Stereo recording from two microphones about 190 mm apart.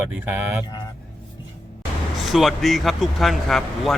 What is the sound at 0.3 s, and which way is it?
Speech, 10° right (ahead or behind).